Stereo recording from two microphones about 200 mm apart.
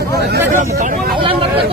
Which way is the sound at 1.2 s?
25° right (ahead or behind).